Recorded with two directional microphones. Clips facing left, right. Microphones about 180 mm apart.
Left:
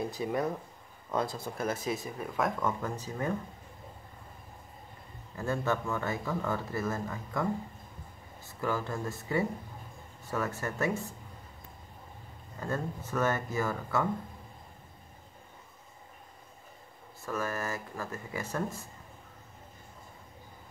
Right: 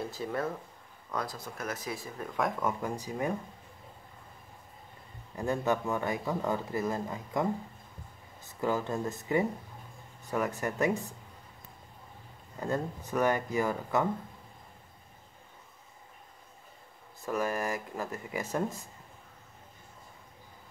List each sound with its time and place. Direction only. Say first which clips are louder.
0.0 s speech: left 2 dB; 15° left (ahead or behind)
1.1 s speech: left 4 dB; 25° left (ahead or behind)
2.1 s speech: right 3 dB; 5° left (ahead or behind)
2.6 s speech: even; 15° right (ahead or behind)
5.3 s speech: right 2 dB; 15° right (ahead or behind)
8.5 s speech: right 2 dB; 20° right (ahead or behind)
12.5 s speech: right 2 dB; 15° right (ahead or behind)
17.2 s speech: right 3 dB; 15° right (ahead or behind)